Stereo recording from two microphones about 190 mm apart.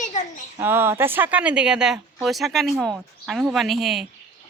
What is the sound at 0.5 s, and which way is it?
Speech, 10° right (ahead or behind).